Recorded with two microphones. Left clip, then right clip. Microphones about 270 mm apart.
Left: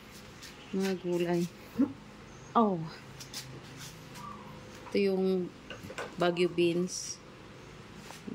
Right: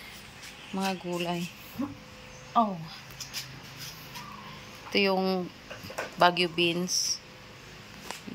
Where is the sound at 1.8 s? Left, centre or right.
Left.